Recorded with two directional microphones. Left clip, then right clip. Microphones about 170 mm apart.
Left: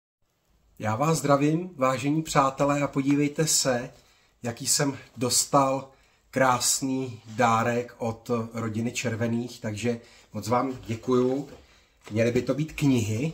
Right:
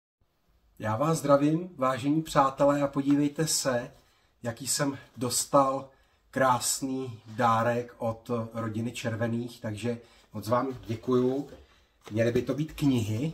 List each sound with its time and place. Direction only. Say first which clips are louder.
0.7 s speech: left 2 dB; 20° left (ahead or behind)
12.2 s speech: left 2 dB; 15° left (ahead or behind)